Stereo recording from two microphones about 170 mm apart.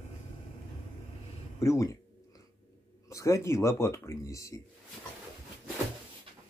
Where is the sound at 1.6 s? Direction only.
15° left (ahead or behind).